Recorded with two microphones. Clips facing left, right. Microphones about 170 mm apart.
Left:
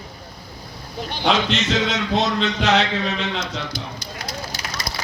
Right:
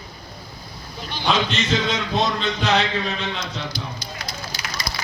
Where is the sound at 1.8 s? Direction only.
80° left.